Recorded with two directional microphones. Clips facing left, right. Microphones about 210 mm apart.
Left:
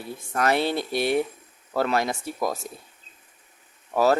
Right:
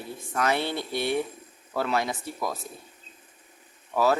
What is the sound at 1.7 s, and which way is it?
Speech, 40° left (ahead or behind).